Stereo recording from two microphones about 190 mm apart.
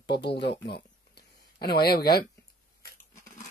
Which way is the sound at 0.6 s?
60° left (ahead or behind).